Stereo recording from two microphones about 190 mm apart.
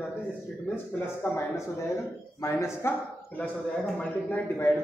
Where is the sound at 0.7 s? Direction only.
15° left (ahead or behind).